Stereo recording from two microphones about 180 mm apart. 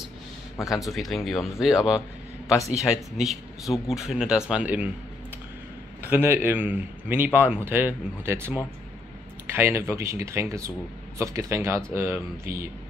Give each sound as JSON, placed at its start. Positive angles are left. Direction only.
{"t": 0.7, "sound": "speech", "side_deg": 0}
{"t": 6.0, "sound": "speech", "side_deg": -10}